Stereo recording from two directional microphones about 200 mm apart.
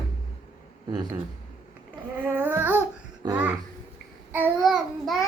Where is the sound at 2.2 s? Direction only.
10° right (ahead or behind).